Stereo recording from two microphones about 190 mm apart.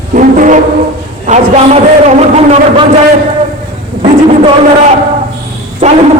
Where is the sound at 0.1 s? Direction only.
45° right (ahead or behind).